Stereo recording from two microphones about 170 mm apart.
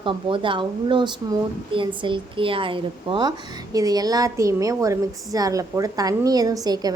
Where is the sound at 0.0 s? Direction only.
30° right (ahead or behind).